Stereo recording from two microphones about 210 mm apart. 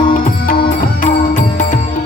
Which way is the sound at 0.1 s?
40° left (ahead or behind).